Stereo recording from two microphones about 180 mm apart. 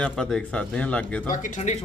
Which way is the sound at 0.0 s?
5° left (ahead or behind).